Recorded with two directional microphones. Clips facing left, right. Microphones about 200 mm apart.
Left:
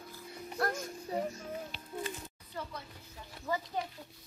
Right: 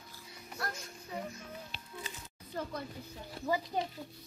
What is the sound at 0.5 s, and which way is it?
Music, 35° left (ahead or behind).